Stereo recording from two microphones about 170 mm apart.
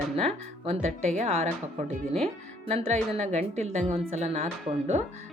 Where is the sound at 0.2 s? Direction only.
35° right (ahead or behind).